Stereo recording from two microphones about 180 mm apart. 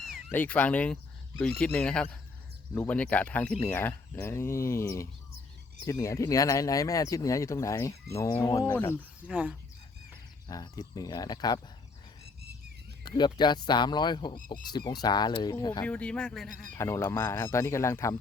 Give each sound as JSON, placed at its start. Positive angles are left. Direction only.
{"t": 0.3, "sound": "speech", "side_deg": 10}
{"t": 9.2, "sound": "speech", "side_deg": -10}
{"t": 10.5, "sound": "speech", "side_deg": 20}
{"t": 13.1, "sound": "speech", "side_deg": 25}
{"t": 15.8, "sound": "speech", "side_deg": 5}
{"t": 16.7, "sound": "speech", "side_deg": 15}